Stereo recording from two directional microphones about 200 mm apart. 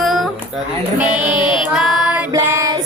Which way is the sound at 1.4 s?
5° right (ahead or behind).